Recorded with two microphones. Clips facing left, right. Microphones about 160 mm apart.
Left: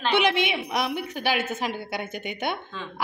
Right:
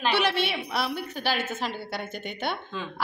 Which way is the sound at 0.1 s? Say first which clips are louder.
Left 5 dB; 15° left (ahead or behind).